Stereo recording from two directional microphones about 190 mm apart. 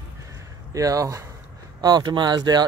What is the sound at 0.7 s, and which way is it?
Speech, 15° right (ahead or behind).